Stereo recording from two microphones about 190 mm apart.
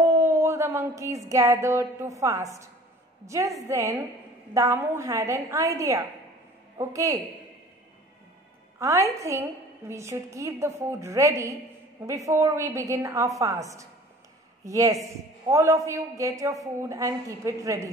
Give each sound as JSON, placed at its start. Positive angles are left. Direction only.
{"t": 0.0, "sound": "a sound", "side_deg": -15}
{"t": 3.3, "sound": "a woman's voice", "side_deg": -15}
{"t": 8.7, "sound": "a woman's voice", "side_deg": -15}